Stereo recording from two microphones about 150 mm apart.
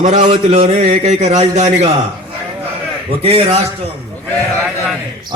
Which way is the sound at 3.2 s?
40° right (ahead or behind).